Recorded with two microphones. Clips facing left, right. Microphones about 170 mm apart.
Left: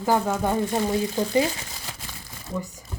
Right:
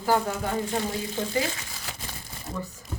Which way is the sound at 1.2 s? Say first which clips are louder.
Left 5 dB; 40° left (ahead or behind).